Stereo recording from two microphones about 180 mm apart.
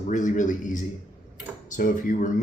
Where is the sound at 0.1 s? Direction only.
45° left (ahead or behind).